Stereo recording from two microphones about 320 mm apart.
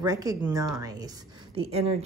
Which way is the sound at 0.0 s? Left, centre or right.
Centre.